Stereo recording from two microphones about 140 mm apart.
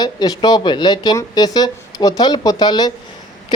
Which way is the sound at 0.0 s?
30° left (ahead or behind).